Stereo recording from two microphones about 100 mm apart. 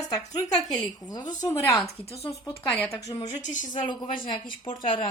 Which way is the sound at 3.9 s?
50° left (ahead or behind).